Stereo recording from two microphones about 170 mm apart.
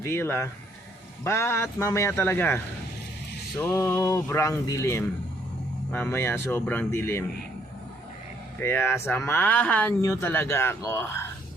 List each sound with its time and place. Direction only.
0.0 s speech: 15° left (ahead or behind)
3.6 s speech: 15° left (ahead or behind)
8.5 s speech: 15° left (ahead or behind)